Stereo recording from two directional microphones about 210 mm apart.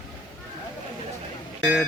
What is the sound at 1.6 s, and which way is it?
Speech, centre (ahead or behind).